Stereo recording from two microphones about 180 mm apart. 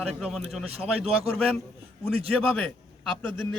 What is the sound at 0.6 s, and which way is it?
Speech, 35° right (ahead or behind).